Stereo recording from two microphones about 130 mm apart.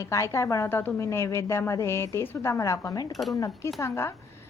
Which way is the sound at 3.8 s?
20° left (ahead or behind).